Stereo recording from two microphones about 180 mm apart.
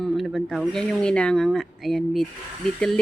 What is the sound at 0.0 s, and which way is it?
Speech, centre (ahead or behind).